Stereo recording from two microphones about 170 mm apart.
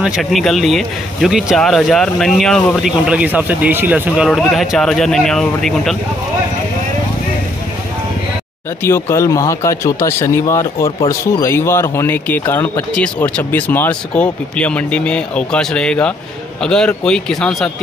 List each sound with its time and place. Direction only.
0.0 s speech: centre (ahead or behind)
4.3 s speech: centre (ahead or behind)
8.8 s speech: 15° left (ahead or behind)